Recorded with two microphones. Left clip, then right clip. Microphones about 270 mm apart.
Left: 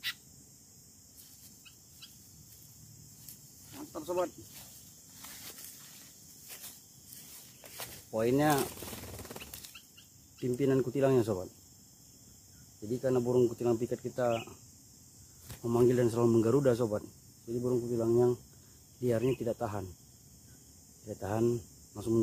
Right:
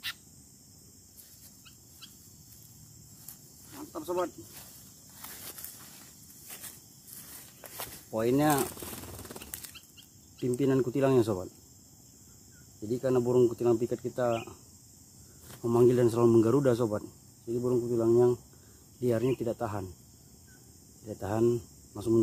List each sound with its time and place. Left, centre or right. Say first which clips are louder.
3.3 s snake: right 2 dB; centre
5.2 s a sound: right 2 dB; centre
8.8 s a sound: right 1 dB; centre
10.4 s speech: right 2 dB; centre
12.8 s speech: right 3 dB; centre
15.6 s speech: right 4 dB; centre
21.1 s speech: right 3 dB; centre